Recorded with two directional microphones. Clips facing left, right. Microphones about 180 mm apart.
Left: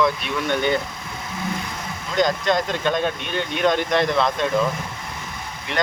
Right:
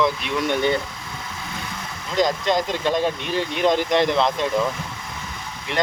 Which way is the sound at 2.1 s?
25° right (ahead or behind).